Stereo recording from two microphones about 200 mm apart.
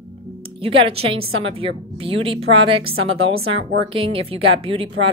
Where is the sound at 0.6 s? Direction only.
25° right (ahead or behind).